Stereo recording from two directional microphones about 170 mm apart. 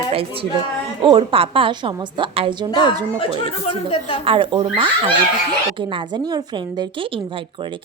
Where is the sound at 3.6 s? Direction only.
35° left (ahead or behind).